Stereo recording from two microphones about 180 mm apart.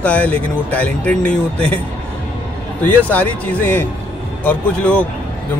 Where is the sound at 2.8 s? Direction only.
10° left (ahead or behind).